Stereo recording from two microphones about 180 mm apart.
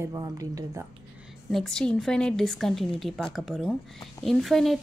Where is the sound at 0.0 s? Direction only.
20° right (ahead or behind).